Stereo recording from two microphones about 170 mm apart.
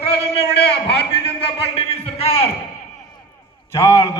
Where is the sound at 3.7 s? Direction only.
20° left (ahead or behind).